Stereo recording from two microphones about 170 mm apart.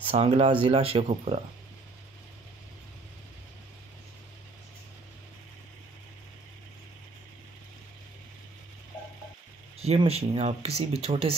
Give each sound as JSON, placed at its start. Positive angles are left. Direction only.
{"t": 0.0, "sound": "speech", "side_deg": -35}
{"t": 9.8, "sound": "speech", "side_deg": -35}